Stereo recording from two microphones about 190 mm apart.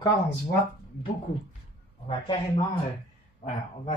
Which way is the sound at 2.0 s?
25° left (ahead or behind).